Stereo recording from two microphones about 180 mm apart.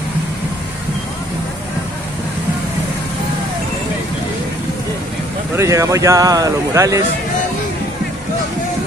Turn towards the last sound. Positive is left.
turn(degrees=-20)  # may be behind; listen again after turning